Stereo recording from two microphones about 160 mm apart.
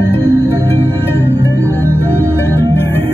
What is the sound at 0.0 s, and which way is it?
Music, 20° left (ahead or behind).